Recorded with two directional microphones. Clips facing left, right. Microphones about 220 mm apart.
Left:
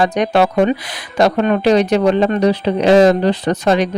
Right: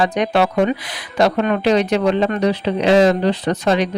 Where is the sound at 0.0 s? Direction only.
40° left (ahead or behind).